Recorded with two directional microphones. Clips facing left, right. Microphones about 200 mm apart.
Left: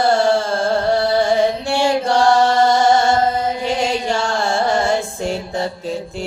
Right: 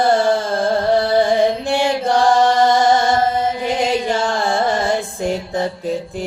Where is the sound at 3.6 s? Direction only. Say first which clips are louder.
Right 1 dB; 15° right (ahead or behind).